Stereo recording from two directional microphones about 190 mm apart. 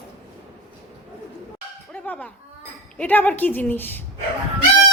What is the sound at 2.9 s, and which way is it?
A woman's voice, 10° left (ahead or behind).